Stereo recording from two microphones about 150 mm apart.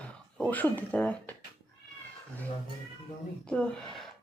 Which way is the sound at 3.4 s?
5° left (ahead or behind).